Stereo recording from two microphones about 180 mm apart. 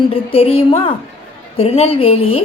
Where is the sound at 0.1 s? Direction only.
30° left (ahead or behind).